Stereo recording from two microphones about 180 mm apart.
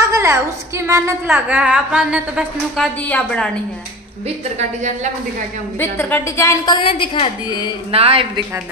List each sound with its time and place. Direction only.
0.1 s a woman's voice: 15° right (ahead or behind)
1.2 s a woman's voice: 5° right (ahead or behind)
3.1 s a woman's voice: 5° left (ahead or behind)
5.8 s a woman's voice: 10° left (ahead or behind)
7.9 s speech: 30° right (ahead or behind)